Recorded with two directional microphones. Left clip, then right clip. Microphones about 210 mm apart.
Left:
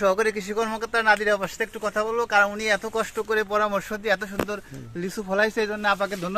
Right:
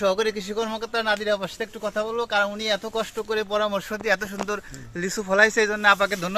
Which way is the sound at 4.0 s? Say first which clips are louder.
Right 2 dB; 10° right (ahead or behind).